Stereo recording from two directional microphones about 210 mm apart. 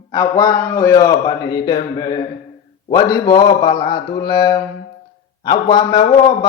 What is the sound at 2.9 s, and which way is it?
Mantra, 20° left (ahead or behind).